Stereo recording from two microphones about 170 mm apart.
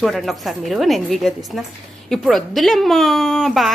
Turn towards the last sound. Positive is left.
turn(degrees=0)  # may be behind; listen again after turning